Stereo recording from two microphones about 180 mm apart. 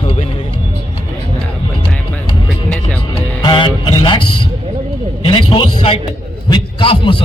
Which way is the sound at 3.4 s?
25° left (ahead or behind).